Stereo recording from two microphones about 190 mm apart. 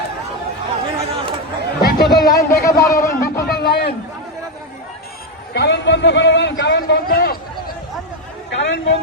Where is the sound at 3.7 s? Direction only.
55° left (ahead or behind).